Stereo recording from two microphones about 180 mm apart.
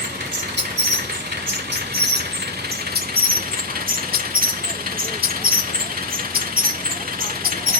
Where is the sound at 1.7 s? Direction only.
60° right (ahead or behind).